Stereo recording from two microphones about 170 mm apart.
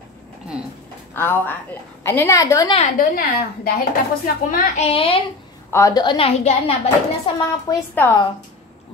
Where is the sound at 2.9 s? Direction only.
60° left (ahead or behind).